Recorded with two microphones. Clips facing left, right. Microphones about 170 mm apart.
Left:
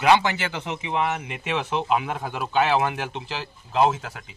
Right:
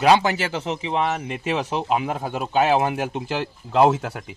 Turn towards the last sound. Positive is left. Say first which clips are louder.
# right 4 dB
turn(degrees=-60)  # may be behind; listen again after turning